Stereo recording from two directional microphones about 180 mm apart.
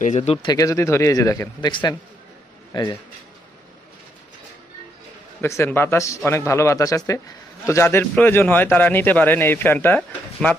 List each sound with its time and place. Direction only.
0.0 s speech: 40° left (ahead or behind)
0.5 s a man's voice: 15° left (ahead or behind)
5.4 s a man's voice: 15° left (ahead or behind)